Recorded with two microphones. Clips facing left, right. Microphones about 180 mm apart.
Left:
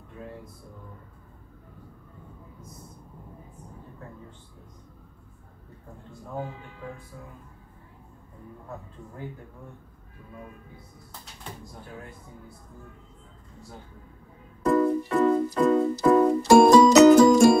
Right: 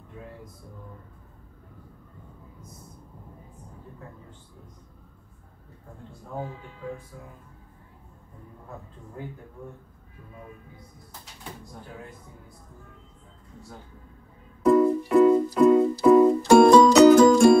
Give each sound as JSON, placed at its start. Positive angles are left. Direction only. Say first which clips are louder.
{"t": 14.7, "sound": "music", "louder": "right 4 dB", "side_deg": -10}
{"t": 16.4, "sound": "music", "louder": "left 1 dB", "side_deg": 5}